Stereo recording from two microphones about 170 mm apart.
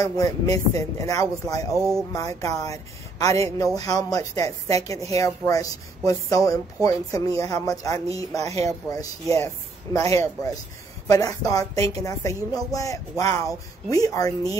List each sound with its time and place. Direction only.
0.0 s speech: 20° left (ahead or behind)
1.7 s speech: 15° right (ahead or behind)
2.1 s speech: 20° left (ahead or behind)